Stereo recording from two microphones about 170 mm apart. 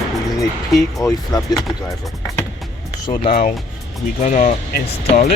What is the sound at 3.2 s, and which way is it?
Speech, 50° left (ahead or behind).